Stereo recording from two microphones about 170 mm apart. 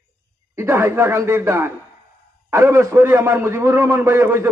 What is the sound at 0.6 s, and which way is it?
A man's voice, 15° right (ahead or behind).